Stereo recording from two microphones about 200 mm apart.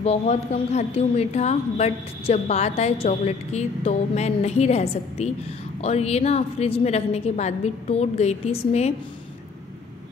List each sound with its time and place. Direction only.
0.0 s a woman's voice: 30° left (ahead or behind)